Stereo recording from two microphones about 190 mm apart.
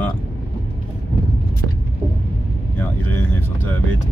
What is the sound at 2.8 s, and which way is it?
Speech, 10° left (ahead or behind).